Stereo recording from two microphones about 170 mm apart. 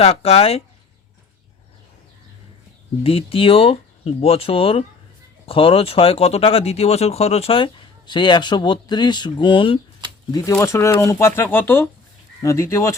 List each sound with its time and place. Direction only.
0.0 s speech: 35° left (ahead or behind)
3.0 s speech: 35° left (ahead or behind)
10.6 s speech: 15° left (ahead or behind)